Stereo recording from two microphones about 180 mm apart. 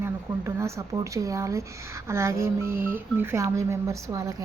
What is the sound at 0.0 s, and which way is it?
A woman's voice, 15° right (ahead or behind).